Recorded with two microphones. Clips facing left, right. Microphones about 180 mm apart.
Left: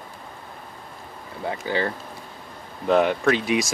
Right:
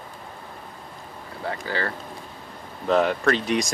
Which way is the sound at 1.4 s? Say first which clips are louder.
Left 3 dB; 20° left (ahead or behind).